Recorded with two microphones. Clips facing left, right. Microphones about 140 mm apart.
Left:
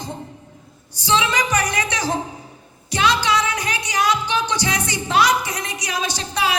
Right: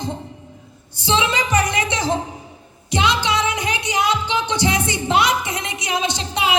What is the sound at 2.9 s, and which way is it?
Music, 20° right (ahead or behind).